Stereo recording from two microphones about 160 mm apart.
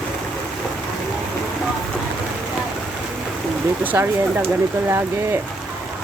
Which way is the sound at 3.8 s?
10° right (ahead or behind).